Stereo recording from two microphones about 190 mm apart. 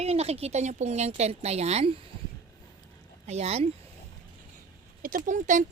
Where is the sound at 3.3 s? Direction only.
35° right (ahead or behind).